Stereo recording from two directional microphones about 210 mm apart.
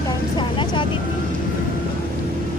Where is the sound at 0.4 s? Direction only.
25° left (ahead or behind).